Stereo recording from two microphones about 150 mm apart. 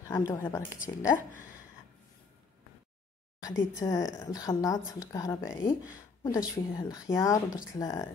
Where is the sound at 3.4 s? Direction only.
20° left (ahead or behind).